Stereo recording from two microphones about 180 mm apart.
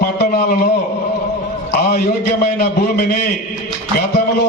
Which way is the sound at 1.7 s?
55° left (ahead or behind).